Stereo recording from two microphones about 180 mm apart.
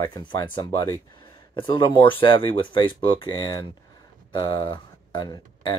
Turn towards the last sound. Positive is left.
turn(degrees=25)  # may be behind; listen again after turning